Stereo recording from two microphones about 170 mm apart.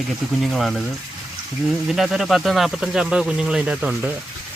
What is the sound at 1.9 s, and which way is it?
Speech, centre (ahead or behind).